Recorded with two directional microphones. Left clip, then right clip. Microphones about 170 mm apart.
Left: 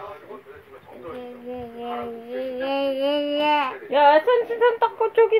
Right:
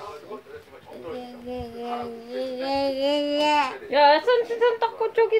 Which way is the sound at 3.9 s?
20° left (ahead or behind).